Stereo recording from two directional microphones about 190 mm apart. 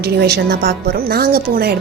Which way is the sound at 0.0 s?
55° right (ahead or behind).